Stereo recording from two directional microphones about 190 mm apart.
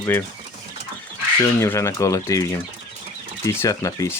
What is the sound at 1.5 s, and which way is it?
Speech, 15° left (ahead or behind).